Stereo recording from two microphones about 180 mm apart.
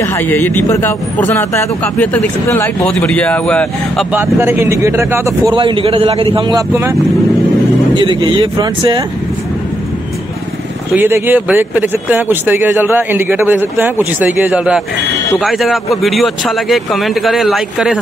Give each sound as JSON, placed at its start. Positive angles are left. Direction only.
{"t": 0.0, "sound": "a man's voice", "side_deg": 10}
{"t": 4.1, "sound": "speech", "side_deg": -15}
{"t": 5.5, "sound": "speech", "side_deg": -30}
{"t": 6.5, "sound": "speech", "side_deg": -15}
{"t": 7.9, "sound": "speech", "side_deg": -25}
{"t": 11.0, "sound": "speech", "side_deg": -10}